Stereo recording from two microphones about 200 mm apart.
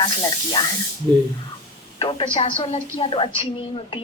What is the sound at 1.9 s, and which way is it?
Speech, 25° left (ahead or behind).